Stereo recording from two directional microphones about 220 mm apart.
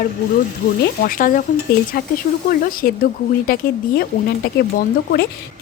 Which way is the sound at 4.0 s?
45° left (ahead or behind).